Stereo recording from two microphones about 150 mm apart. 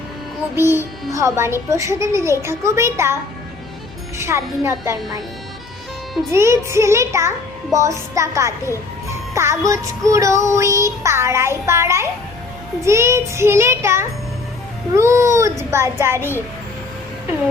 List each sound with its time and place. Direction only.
0.5 s child singing: 15° right (ahead or behind)
4.2 s child singing: 20° right (ahead or behind)
6.3 s child singing: 20° right (ahead or behind)